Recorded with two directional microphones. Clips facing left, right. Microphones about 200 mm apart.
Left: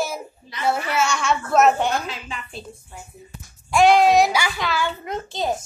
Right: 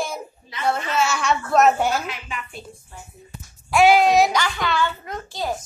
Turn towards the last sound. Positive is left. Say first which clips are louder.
# left 3 dB
turn(degrees=20)  # may be behind; listen again after turning